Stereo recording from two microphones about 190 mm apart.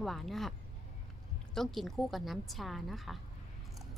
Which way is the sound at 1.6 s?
Centre (ahead or behind).